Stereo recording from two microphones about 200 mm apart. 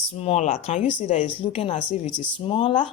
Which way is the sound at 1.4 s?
25° left (ahead or behind).